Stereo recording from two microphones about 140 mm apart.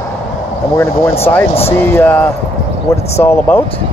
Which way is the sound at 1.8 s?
15° left (ahead or behind).